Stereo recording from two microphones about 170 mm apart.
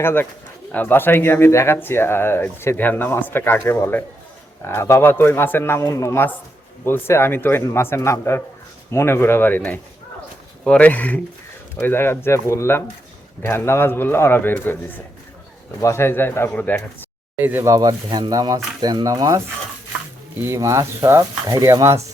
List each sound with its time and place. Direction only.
0.0 s speech: 10° left (ahead or behind)
17.3 s speech: 10° right (ahead or behind)
20.4 s speech: 15° right (ahead or behind)